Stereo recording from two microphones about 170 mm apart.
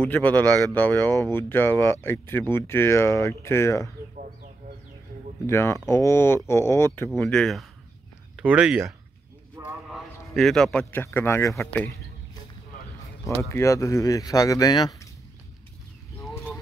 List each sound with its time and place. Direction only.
0.0 s speech: 10° left (ahead or behind)
5.5 s speech: 15° left (ahead or behind)
7.1 s a man's voice: 5° left (ahead or behind)
13.3 s speech: 15° left (ahead or behind)